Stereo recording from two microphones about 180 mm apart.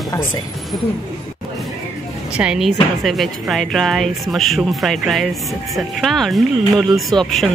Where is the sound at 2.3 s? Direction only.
5° right (ahead or behind).